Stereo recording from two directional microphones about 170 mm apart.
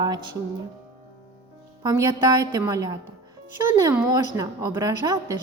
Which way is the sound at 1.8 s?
20° right (ahead or behind).